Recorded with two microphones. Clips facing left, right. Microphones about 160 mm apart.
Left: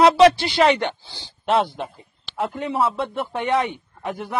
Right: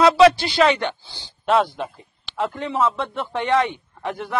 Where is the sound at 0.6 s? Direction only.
30° left (ahead or behind).